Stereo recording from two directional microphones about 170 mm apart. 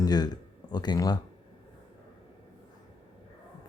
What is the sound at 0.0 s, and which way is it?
Speech, 25° left (ahead or behind).